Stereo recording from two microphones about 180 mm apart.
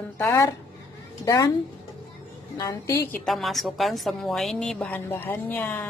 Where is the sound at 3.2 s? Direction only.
Centre (ahead or behind).